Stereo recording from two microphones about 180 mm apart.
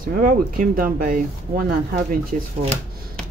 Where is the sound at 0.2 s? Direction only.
50° right (ahead or behind).